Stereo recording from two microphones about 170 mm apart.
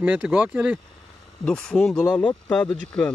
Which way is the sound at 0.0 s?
10° right (ahead or behind).